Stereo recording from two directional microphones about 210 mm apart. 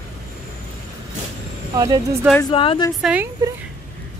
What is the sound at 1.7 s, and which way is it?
Speech, 15° right (ahead or behind).